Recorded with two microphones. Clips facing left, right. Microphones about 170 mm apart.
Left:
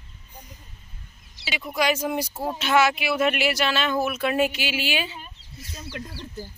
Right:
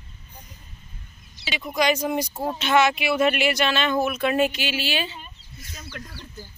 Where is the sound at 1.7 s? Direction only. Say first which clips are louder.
Right 2 dB; 5° left (ahead or behind).